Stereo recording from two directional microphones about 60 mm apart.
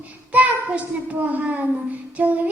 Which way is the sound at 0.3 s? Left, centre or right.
Right.